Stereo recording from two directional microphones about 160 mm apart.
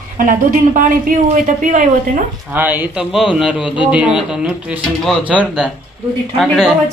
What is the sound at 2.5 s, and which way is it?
A man's voice, 10° right (ahead or behind).